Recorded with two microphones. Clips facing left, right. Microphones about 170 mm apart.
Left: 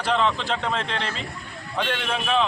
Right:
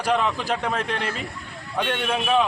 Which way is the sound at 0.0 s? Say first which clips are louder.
Even; 10° right (ahead or behind).